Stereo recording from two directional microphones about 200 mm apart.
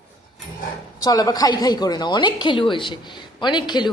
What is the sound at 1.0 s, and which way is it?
A woman's voice, 20° left (ahead or behind).